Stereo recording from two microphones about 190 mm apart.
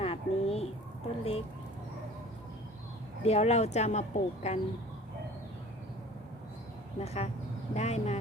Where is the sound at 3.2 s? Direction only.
35° left (ahead or behind).